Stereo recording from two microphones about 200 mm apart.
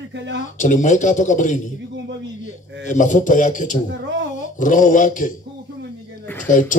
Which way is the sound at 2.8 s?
40° left (ahead or behind).